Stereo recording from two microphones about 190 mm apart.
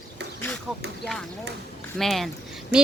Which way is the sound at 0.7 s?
5° right (ahead or behind).